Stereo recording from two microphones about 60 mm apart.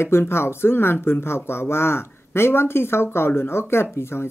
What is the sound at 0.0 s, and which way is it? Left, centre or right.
Speech, left.